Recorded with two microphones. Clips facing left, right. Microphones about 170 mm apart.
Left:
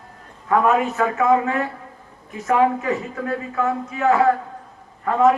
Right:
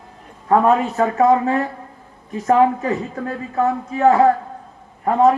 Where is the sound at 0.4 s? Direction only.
35° right (ahead or behind).